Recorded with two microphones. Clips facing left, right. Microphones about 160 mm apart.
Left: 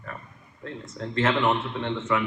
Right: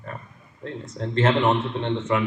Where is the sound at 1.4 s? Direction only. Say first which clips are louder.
Right 3 dB; 30° right (ahead or behind).